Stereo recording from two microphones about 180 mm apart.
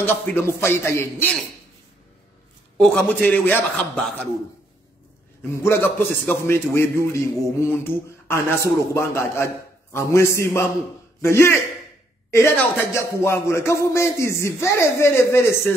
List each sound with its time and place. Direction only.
0.0 s a man's voice: 10° left (ahead or behind)
2.8 s a man's voice: 5° left (ahead or behind)
5.5 s a man's voice: 15° left (ahead or behind)